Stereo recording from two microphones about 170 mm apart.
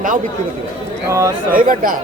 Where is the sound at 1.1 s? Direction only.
15° right (ahead or behind).